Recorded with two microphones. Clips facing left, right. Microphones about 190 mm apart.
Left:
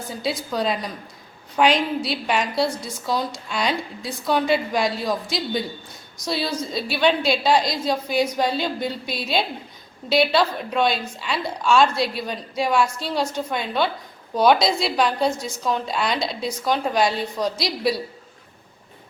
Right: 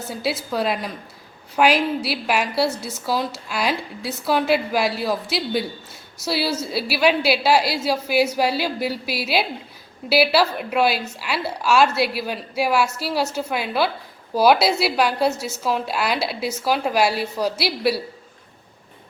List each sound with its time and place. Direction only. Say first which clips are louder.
0.1 s a woman's voice: right 1 dB; 5° right (ahead or behind)